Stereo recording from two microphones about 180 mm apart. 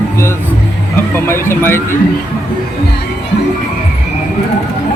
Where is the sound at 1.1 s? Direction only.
15° left (ahead or behind).